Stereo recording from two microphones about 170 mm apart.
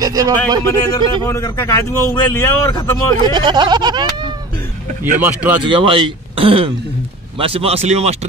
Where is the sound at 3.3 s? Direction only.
25° right (ahead or behind).